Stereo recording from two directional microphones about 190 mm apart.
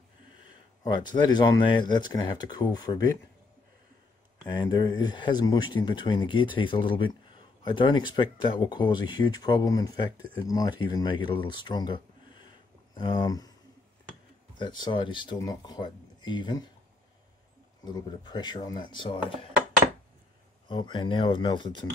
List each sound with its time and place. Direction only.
0.8 s speech: 25° left (ahead or behind)
4.5 s speech: 20° left (ahead or behind)
14.6 s speech: 25° left (ahead or behind)
17.8 s speech: 20° left (ahead or behind)
20.6 s speech: 25° left (ahead or behind)